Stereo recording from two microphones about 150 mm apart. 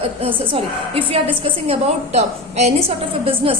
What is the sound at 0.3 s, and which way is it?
A woman's voice, 35° right (ahead or behind).